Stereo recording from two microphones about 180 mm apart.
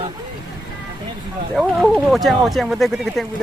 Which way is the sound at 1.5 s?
Centre (ahead or behind).